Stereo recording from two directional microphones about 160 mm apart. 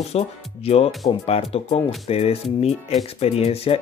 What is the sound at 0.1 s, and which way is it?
Speech, 40° left (ahead or behind).